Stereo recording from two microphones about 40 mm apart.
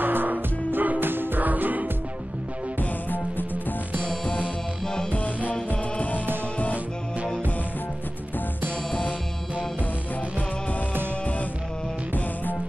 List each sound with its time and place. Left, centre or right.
0.0 s music: right
2.8 s music: left
5.1 s music: left